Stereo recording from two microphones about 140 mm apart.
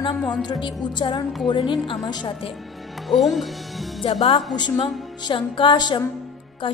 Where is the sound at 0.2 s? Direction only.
Centre (ahead or behind).